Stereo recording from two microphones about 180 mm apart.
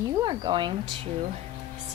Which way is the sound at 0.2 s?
25° right (ahead or behind).